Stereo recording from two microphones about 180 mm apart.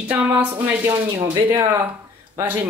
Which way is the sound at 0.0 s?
10° right (ahead or behind).